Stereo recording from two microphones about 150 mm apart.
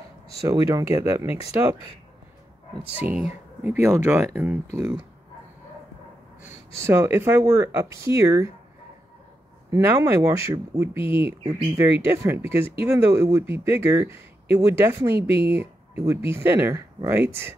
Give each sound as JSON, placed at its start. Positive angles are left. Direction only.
{"t": 0.5, "sound": "speech", "side_deg": -20}
{"t": 3.0, "sound": "speech", "side_deg": -10}
{"t": 6.4, "sound": "speech", "side_deg": -15}
{"t": 9.7, "sound": "speech", "side_deg": -20}